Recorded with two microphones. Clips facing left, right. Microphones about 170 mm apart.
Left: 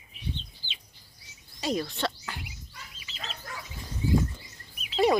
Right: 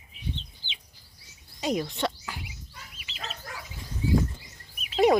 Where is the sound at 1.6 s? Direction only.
15° right (ahead or behind).